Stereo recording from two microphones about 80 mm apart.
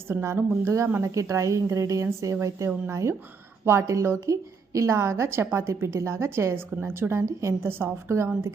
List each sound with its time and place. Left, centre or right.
0.1 s a woman's voice: right